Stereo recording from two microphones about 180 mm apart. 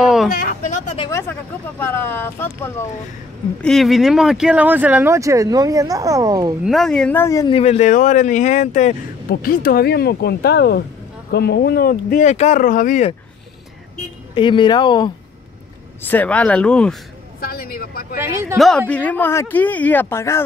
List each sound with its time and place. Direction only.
0.3 s a sound: 55° left (ahead or behind)
1.8 s speech: 15° left (ahead or behind)
3.6 s speech: centre (ahead or behind); by 6.5 s 20° right (ahead or behind)
6.6 s speech: centre (ahead or behind); by 7.5 s 20° left (ahead or behind)
7.5 s speech: 35° left (ahead or behind)
9.3 s speech: 55° left (ahead or behind)
14.3 s speech: 25° left (ahead or behind)
16.0 s speech: 10° left (ahead or behind)
17.4 s speech: 55° left (ahead or behind)
18.2 s speech: 15° right (ahead or behind)
18.9 s speech: 10° left (ahead or behind)